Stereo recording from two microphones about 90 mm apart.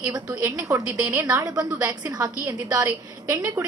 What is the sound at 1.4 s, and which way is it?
A woman's voice, 40° right (ahead or behind).